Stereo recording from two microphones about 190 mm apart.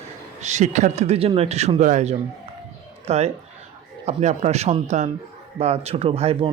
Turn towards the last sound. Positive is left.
turn(degrees=-30)  # may be behind; listen again after turning